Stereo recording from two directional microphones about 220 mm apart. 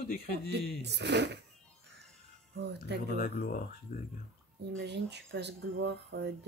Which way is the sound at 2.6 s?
50° right (ahead or behind).